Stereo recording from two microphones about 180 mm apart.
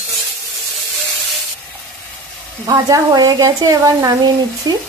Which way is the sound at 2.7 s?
20° right (ahead or behind).